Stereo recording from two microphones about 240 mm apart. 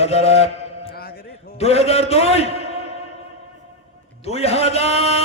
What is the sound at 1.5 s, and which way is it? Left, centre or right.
A man's voice, left.